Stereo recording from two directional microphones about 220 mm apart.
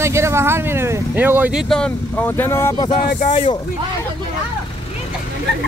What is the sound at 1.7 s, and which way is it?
Speech, 5° left (ahead or behind).